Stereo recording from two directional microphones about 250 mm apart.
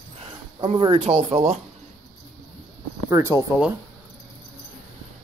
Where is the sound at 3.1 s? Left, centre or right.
Centre.